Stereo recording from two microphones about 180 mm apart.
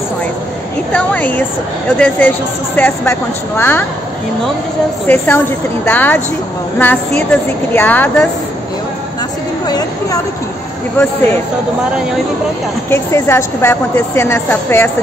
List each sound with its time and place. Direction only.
0.9 s a woman's voice: 10° left (ahead or behind)
5.0 s a woman's voice: 10° left (ahead or behind)
11.0 s a woman's voice: 15° left (ahead or behind)
12.9 s a woman's voice: 15° left (ahead or behind)